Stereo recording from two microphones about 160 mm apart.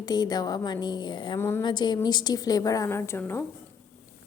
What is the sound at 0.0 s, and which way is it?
A woman's voice, 25° left (ahead or behind).